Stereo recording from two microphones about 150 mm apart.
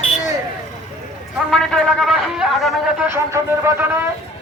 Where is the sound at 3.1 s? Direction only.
15° right (ahead or behind).